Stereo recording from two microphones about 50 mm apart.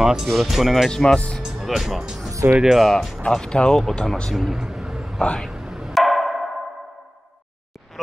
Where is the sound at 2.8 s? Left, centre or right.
Centre.